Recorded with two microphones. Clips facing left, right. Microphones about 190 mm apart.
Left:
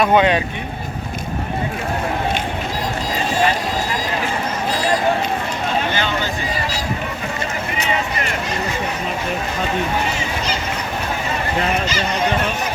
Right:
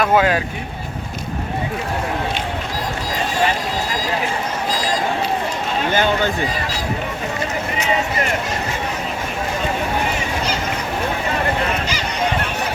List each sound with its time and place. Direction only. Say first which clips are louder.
0.0 s speech: left 1 dB; 5° right (ahead or behind)
5.9 s speech: right 4 dB; 50° right (ahead or behind)